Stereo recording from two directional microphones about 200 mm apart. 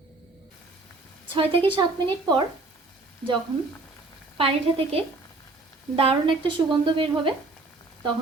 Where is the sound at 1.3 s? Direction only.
25° right (ahead or behind).